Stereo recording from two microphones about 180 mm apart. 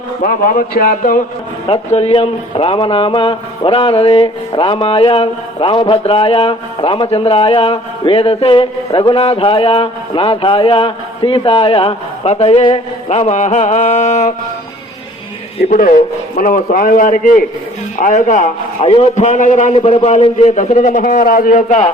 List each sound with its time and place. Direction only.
0.2 s a man's voice: 50° left (ahead or behind)
1.6 s speech: 35° left (ahead or behind)
15.7 s a man's voice: 45° left (ahead or behind)
18.8 s speech: 30° left (ahead or behind)